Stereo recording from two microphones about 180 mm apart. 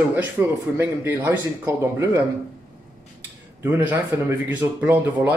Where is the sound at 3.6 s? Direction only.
10° right (ahead or behind).